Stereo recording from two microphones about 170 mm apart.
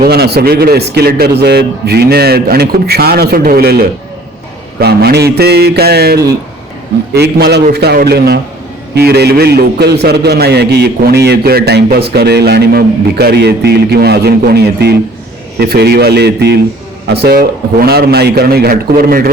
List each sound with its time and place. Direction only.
0.0 s a man's voice: 70° right (ahead or behind)